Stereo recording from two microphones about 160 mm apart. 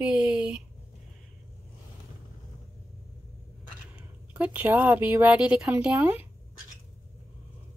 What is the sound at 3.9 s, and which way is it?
Speech, 10° right (ahead or behind).